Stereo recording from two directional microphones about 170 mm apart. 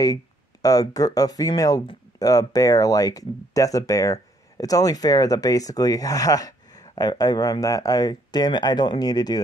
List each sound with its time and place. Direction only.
0.0 s speech: 20° left (ahead or behind)